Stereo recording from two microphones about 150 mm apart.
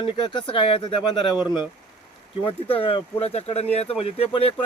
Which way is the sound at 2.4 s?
40° left (ahead or behind).